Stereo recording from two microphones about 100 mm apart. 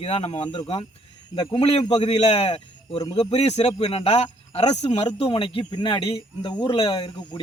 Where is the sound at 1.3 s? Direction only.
55° left (ahead or behind).